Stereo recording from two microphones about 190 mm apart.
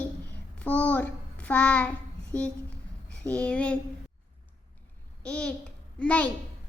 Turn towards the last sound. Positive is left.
turn(degrees=5)  # may be behind; listen again after turning